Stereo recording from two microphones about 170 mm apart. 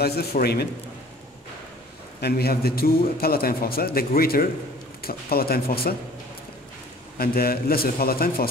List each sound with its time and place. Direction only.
0.0 s a man's voice: 70° left (ahead or behind)
2.1 s a man's voice: 70° left (ahead or behind)
7.2 s a man's voice: 60° left (ahead or behind)